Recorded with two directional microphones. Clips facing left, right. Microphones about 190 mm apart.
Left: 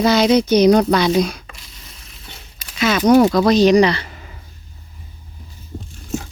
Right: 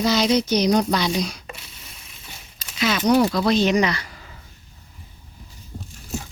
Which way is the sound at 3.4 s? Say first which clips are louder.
Left 7 dB; 40° left (ahead or behind).